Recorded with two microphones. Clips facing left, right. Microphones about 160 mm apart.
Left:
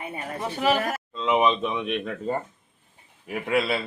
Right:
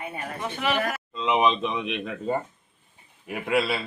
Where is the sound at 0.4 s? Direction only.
35° left (ahead or behind).